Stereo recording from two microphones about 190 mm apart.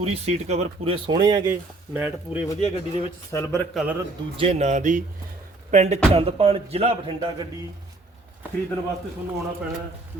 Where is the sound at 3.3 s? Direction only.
10° left (ahead or behind).